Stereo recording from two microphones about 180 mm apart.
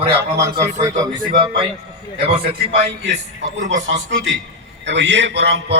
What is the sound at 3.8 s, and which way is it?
Speech, 90° right.